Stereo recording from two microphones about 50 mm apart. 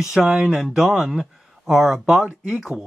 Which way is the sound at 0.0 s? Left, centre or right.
Centre.